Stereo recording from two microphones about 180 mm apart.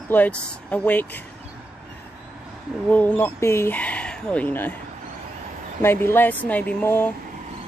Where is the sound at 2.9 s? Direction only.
10° left (ahead or behind).